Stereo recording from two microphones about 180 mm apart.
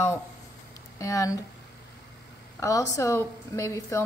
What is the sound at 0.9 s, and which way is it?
Speech, 20° left (ahead or behind).